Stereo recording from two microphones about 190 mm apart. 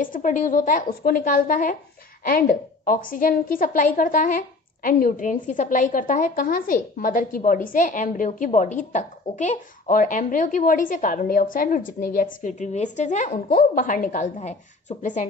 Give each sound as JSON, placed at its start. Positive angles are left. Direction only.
{"t": 0.0, "sound": "a woman's voice", "side_deg": 45}